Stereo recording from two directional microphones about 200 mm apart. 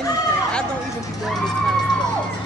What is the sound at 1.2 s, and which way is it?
Speech, centre (ahead or behind).